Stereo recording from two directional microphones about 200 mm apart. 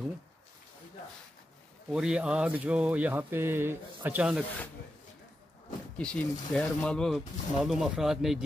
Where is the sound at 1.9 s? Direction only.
5° right (ahead or behind).